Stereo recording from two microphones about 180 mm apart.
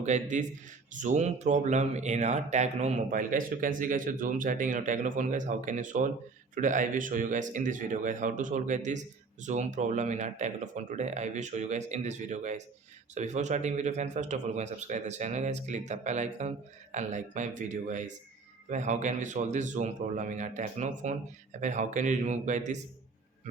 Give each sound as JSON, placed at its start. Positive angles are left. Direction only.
{"t": 0.0, "sound": "speech", "side_deg": -40}